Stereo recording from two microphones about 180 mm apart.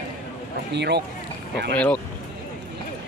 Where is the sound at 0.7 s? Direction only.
70° right (ahead or behind).